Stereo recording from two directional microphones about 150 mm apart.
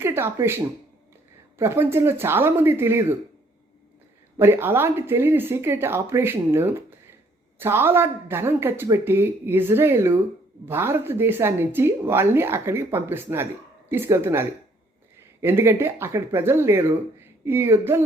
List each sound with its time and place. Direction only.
0.0 s a woman's voice: 15° right (ahead or behind)
4.4 s a woman's voice: 15° right (ahead or behind)